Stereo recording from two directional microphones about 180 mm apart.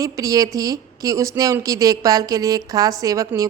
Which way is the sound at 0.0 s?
20° right (ahead or behind).